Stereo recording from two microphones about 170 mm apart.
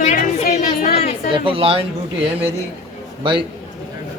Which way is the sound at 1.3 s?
30° right (ahead or behind).